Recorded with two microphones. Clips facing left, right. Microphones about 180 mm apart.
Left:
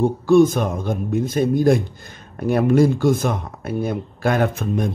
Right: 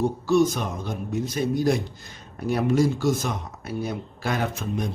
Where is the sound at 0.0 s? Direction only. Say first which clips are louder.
Left 6 dB; 55° left (ahead or behind).